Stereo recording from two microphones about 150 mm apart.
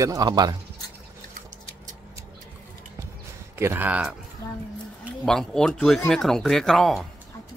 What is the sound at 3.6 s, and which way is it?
Speech, 15° right (ahead or behind).